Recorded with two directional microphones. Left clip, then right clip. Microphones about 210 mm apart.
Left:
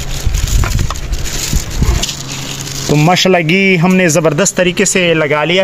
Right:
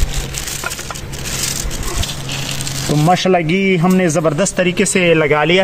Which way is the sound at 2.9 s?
35° left (ahead or behind).